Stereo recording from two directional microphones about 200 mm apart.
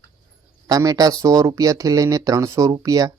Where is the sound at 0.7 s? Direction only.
20° right (ahead or behind).